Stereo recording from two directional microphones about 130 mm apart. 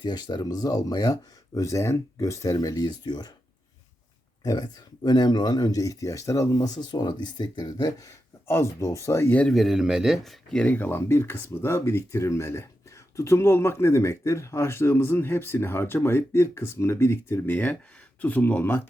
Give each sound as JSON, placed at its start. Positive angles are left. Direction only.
{"t": 0.0, "sound": "speech", "side_deg": 35}
{"t": 4.4, "sound": "speech", "side_deg": 30}